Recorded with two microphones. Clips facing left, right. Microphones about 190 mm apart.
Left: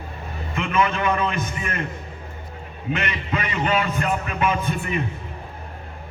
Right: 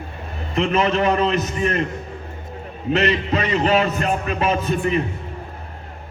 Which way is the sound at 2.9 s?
35° right (ahead or behind).